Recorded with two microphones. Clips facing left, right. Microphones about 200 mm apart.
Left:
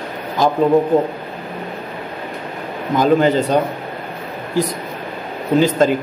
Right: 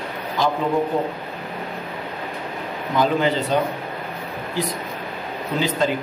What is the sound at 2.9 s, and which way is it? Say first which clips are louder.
Speech: left 6 dB; 45° left (ahead or behind).